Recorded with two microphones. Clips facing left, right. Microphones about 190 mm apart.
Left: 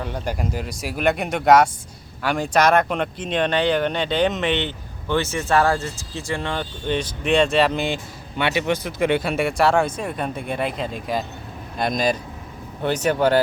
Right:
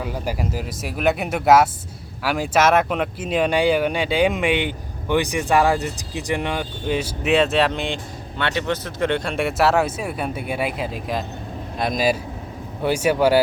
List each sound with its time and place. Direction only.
0.0 s speech: 5° right (ahead or behind)